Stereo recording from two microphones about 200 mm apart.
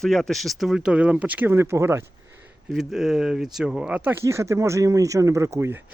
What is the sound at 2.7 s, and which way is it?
Speech, centre (ahead or behind).